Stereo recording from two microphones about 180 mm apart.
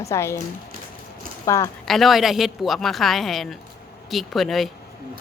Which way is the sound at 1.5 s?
20° left (ahead or behind).